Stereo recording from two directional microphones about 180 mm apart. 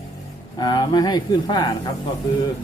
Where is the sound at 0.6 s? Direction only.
25° left (ahead or behind).